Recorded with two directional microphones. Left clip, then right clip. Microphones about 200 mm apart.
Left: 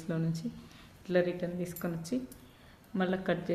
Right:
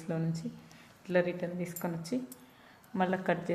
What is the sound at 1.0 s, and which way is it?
A woman's voice, 10° left (ahead or behind).